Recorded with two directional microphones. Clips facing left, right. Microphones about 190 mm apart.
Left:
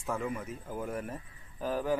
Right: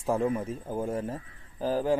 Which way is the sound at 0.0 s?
35° right (ahead or behind).